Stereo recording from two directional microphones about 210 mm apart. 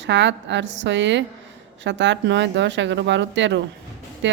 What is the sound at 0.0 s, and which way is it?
Speech, 60° right (ahead or behind).